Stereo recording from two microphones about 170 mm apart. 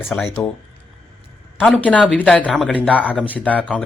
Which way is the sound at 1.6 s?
5° left (ahead or behind).